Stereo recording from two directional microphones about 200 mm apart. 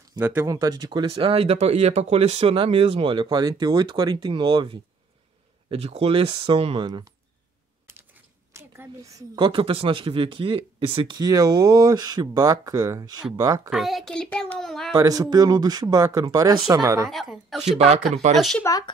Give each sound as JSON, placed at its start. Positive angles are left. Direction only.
{"t": 0.2, "sound": "speech", "side_deg": -10}
{"t": 8.5, "sound": "speech", "side_deg": -15}
{"t": 13.7, "sound": "a child's voice", "side_deg": 0}
{"t": 15.0, "sound": "speech", "side_deg": -20}
{"t": 17.1, "sound": "a child's voice", "side_deg": 0}
{"t": 18.6, "sound": "speech", "side_deg": 15}